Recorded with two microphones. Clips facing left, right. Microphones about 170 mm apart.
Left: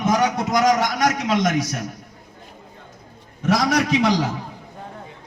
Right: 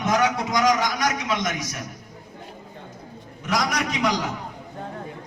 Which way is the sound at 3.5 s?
30° left (ahead or behind).